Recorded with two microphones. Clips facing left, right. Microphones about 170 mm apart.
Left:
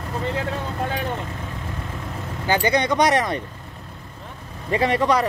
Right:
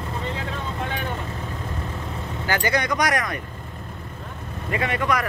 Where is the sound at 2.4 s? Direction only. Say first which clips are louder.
Left 4 dB; 20° left (ahead or behind).